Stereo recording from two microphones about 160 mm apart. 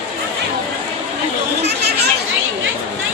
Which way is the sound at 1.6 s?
90° right.